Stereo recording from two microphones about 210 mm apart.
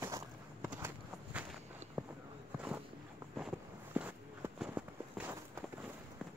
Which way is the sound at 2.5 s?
5° right (ahead or behind).